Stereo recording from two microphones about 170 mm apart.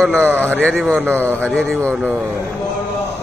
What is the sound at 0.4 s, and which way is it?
A man's voice, 10° left (ahead or behind).